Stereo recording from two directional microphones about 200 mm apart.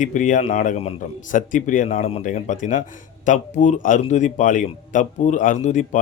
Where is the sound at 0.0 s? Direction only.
40° left (ahead or behind).